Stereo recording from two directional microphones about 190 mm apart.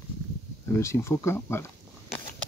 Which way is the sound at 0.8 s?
15° left (ahead or behind).